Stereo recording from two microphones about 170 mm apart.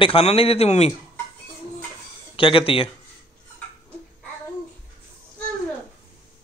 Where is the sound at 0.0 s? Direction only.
35° left (ahead or behind).